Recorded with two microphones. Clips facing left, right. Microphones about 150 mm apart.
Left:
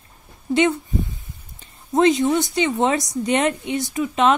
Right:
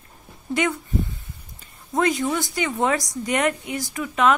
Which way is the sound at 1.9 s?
20° left (ahead or behind).